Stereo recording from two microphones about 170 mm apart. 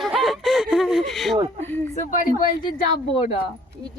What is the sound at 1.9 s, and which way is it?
Speech, 50° left (ahead or behind).